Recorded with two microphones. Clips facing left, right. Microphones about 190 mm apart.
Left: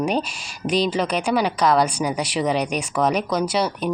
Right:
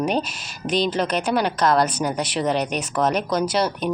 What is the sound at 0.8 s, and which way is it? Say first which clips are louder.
Speech: even; 10° left (ahead or behind).